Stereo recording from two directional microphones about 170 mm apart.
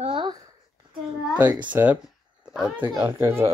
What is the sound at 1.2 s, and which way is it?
A child's voice, 10° right (ahead or behind).